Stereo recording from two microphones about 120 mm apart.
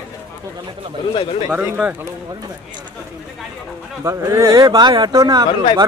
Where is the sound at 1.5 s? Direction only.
10° right (ahead or behind).